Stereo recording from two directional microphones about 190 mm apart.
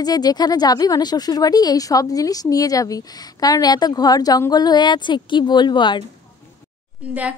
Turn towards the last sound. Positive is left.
turn(degrees=-10)  # may be behind; listen again after turning